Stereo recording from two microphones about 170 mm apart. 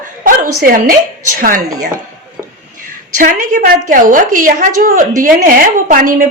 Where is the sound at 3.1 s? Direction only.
50° right (ahead or behind).